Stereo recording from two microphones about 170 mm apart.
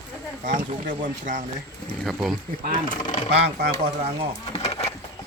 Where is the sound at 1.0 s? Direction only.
50° right (ahead or behind).